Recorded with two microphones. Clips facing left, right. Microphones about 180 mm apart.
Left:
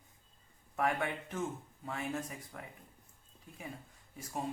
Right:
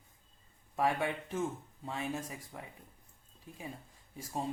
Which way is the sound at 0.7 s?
20° right (ahead or behind).